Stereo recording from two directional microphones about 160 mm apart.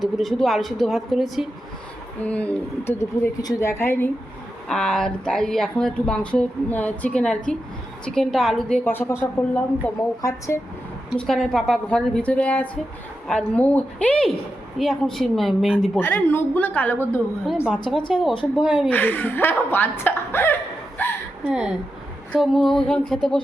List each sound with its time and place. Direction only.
0.0 s speech: centre (ahead or behind)
4.7 s speech: 5° left (ahead or behind)
8.8 s speech: 15° left (ahead or behind)
11.2 s speech: 5° left (ahead or behind)
16.0 s speech: 10° left (ahead or behind)
17.8 s speech: 30° left (ahead or behind)
18.1 s speech: centre (ahead or behind)
18.9 s speech: 10° left (ahead or behind)
21.0 s a sound: 10° left (ahead or behind)
21.4 s speech: 5° right (ahead or behind)